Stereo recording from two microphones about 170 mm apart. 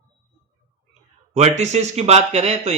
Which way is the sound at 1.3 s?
40° right (ahead or behind).